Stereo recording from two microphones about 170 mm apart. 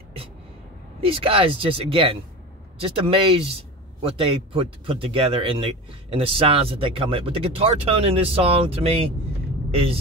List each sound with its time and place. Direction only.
1.0 s speech: 35° right (ahead or behind)